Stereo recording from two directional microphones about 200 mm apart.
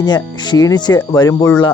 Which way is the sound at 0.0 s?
20° left (ahead or behind).